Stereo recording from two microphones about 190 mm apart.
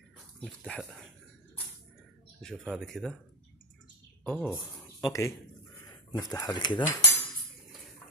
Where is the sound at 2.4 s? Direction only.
Centre (ahead or behind).